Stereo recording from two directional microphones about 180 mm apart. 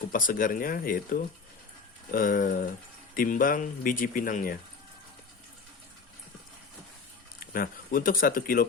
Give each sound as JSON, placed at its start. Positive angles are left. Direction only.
{"t": 0.1, "sound": "speech", "side_deg": 50}
{"t": 7.3, "sound": "speech", "side_deg": 55}